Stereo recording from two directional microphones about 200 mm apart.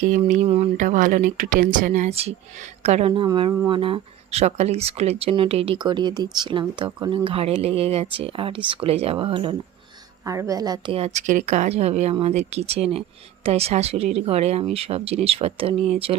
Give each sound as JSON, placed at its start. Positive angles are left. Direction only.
{"t": 0.0, "sound": "speech", "side_deg": -40}